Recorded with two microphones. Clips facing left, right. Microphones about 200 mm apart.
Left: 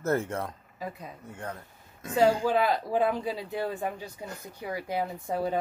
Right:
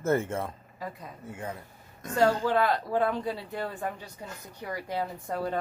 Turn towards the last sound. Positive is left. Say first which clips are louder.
# left 2 dB
turn(degrees=10)  # may be behind; listen again after turning